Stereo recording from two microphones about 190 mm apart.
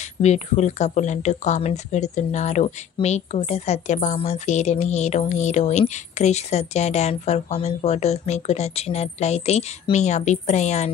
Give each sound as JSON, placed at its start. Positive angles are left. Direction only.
{"t": 0.2, "sound": "speech", "side_deg": 35}